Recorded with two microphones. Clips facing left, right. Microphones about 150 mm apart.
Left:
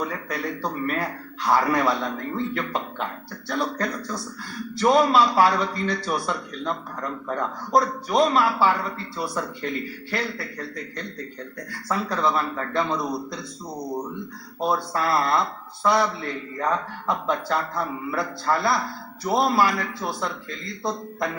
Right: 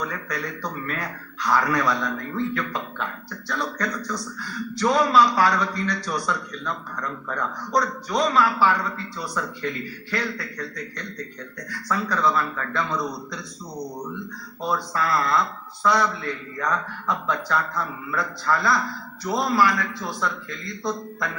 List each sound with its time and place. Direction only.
0.0 s a man's voice: 25° left (ahead or behind)
14.6 s a man's voice: 25° left (ahead or behind)